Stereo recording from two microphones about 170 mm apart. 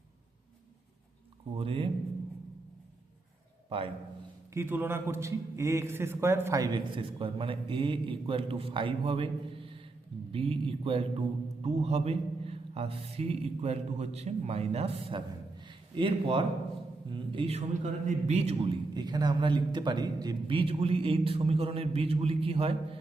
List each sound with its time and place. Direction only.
1.5 s a man's voice: 30° right (ahead or behind)
3.7 s a man's voice: 35° right (ahead or behind)
4.5 s a man's voice: 15° right (ahead or behind); by 23.0 s 35° right (ahead or behind)